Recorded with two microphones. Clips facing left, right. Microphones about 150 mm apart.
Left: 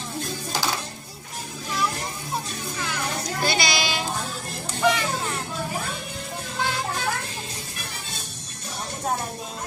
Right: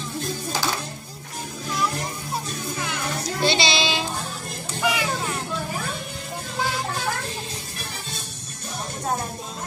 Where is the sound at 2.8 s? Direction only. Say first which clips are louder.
Left 1 dB; 20° right (ahead or behind).